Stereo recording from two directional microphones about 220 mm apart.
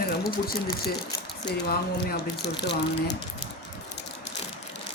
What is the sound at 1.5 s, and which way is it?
Speech, 45° left (ahead or behind).